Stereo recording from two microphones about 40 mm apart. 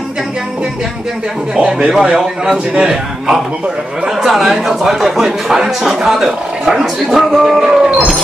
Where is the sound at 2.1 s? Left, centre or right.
Centre.